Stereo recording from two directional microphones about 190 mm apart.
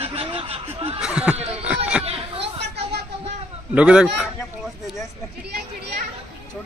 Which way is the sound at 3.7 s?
5° right (ahead or behind).